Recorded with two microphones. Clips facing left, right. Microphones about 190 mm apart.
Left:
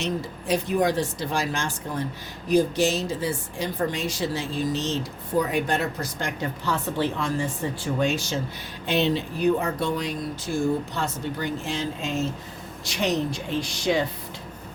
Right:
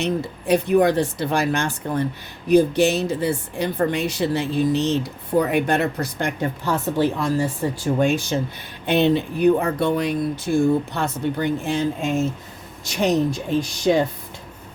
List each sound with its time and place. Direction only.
0.0 s a woman's voice: 60° right (ahead or behind)